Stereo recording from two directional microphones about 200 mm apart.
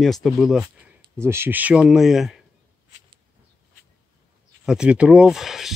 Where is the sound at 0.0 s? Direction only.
Centre (ahead or behind).